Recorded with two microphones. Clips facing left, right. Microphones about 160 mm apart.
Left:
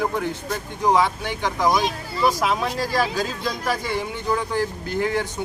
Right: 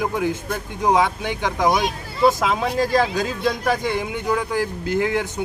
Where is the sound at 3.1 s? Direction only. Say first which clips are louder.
Right 4 dB; 20° right (ahead or behind).